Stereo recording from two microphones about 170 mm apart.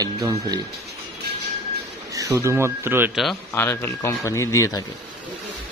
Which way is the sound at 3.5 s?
10° left (ahead or behind).